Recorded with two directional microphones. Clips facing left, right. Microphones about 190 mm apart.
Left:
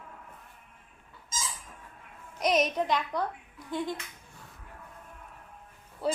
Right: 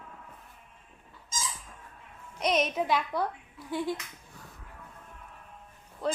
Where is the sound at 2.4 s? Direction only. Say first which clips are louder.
Left 1 dB; centre (ahead or behind).